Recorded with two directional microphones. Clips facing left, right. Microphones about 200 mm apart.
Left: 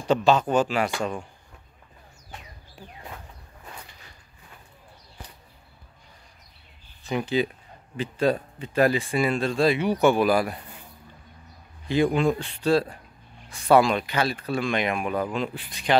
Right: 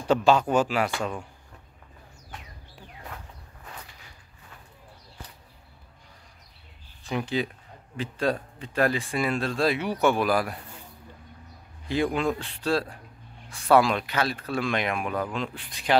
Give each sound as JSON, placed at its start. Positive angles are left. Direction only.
{"t": 0.0, "sound": "speech", "side_deg": -10}
{"t": 7.0, "sound": "speech", "side_deg": 0}
{"t": 11.9, "sound": "speech", "side_deg": 0}